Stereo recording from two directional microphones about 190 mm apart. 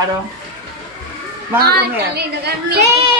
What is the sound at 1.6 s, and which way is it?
A woman's voice, 55° right (ahead or behind).